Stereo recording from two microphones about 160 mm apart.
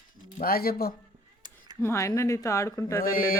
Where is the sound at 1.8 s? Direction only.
15° left (ahead or behind).